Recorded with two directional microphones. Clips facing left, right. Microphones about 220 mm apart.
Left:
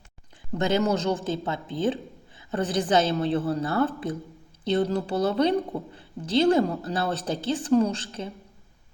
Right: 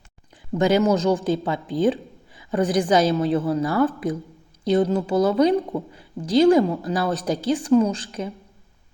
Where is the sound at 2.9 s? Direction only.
30° left (ahead or behind).